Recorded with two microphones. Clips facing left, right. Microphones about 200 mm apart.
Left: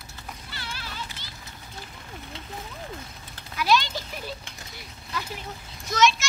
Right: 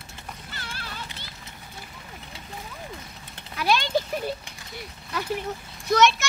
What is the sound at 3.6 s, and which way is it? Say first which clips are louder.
Clip-clop: right 1 dB; 55° right (ahead or behind).